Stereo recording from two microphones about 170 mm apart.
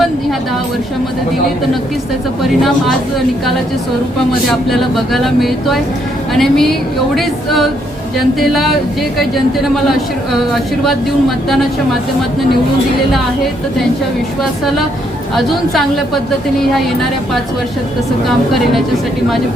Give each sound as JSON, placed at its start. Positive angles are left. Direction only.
{"t": 4.7, "sound": "speech", "side_deg": 0}
{"t": 16.6, "sound": "speech", "side_deg": 0}